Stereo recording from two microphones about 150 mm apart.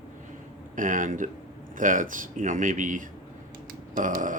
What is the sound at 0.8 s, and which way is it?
Speech, 60° right (ahead or behind).